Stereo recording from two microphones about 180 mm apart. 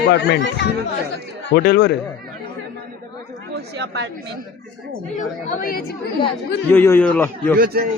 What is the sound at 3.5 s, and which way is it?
Speech, 75° right (ahead or behind).